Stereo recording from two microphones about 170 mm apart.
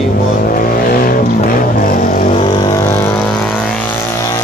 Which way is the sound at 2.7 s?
15° left (ahead or behind).